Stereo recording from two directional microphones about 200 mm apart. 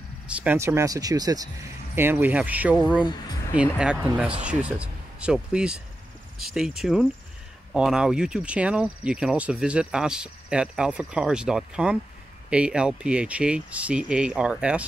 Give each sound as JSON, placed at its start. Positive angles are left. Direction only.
{"t": 0.3, "sound": "speech", "side_deg": -5}